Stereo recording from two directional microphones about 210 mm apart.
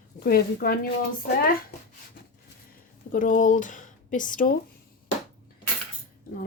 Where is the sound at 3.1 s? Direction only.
40° left (ahead or behind).